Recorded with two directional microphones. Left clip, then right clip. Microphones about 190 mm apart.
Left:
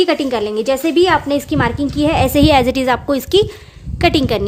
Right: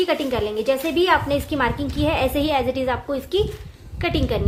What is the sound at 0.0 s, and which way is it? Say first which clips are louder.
A woman's voice: left 6 dB; 50° left (ahead or behind).